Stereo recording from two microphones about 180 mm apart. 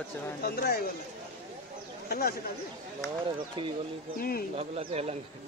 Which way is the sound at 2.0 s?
60° left (ahead or behind).